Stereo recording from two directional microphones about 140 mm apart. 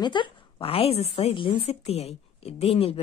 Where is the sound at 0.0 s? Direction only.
35° left (ahead or behind).